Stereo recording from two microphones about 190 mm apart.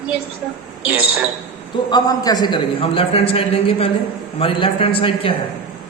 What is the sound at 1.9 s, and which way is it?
A man's voice, 20° left (ahead or behind).